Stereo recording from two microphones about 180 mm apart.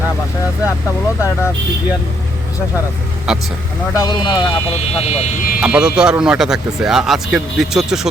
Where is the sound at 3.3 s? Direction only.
Centre (ahead or behind).